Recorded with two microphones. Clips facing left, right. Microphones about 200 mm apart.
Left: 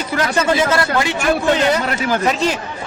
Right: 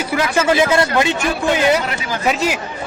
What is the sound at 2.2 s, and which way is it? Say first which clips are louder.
Speech: right 3 dB; 5° right (ahead or behind).